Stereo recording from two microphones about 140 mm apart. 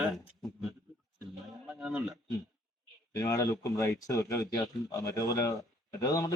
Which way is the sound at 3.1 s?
20° left (ahead or behind).